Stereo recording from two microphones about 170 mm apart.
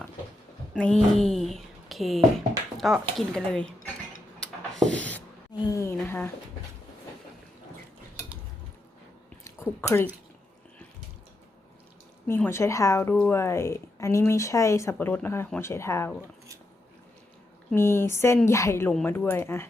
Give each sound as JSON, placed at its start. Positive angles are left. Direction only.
{"t": 0.7, "sound": "speech", "side_deg": 5}
{"t": 4.8, "sound": "a sound", "side_deg": 5}
{"t": 5.6, "sound": "speech", "side_deg": 15}
{"t": 9.4, "sound": "a sound", "side_deg": 15}
{"t": 12.3, "sound": "speech", "side_deg": 15}
{"t": 17.7, "sound": "speech", "side_deg": 15}